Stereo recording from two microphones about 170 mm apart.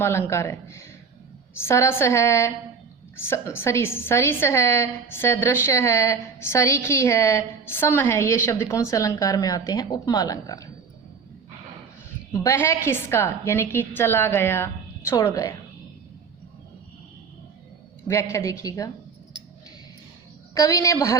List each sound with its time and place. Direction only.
0.0 s a woman's voice: 15° left (ahead or behind)
12.3 s a woman's voice: 15° left (ahead or behind)
18.1 s a woman's voice: 15° left (ahead or behind)
20.5 s a woman's voice: 20° left (ahead or behind)